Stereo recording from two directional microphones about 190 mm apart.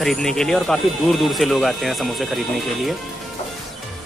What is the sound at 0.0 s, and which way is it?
Speech, centre (ahead or behind).